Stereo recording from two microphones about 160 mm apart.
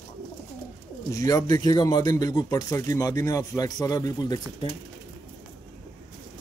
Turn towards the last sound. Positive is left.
turn(degrees=25)  # may be behind; listen again after turning